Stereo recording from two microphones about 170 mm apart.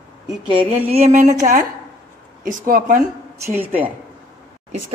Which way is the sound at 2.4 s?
50° right (ahead or behind).